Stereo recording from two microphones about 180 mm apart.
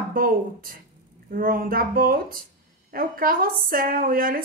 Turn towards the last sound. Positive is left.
turn(degrees=-50)  # may be behind; listen again after turning